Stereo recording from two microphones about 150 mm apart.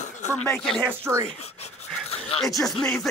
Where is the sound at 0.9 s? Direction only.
15° right (ahead or behind).